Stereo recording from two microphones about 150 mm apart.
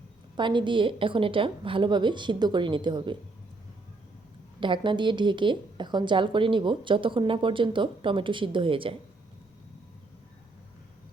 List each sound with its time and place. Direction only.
0.3 s a woman's voice: 30° right (ahead or behind)
4.6 s a woman's voice: 30° right (ahead or behind)